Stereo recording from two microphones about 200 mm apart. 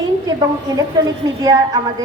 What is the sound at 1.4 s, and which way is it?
Speech, 20° right (ahead or behind).